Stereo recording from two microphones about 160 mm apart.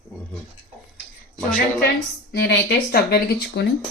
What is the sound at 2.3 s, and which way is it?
Speech, 90° left.